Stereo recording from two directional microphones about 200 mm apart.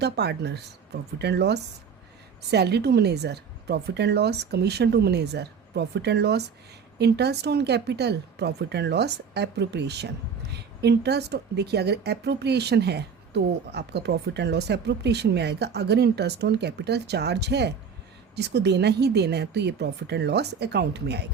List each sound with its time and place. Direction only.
0.0 s a woman's voice: 55° right (ahead or behind)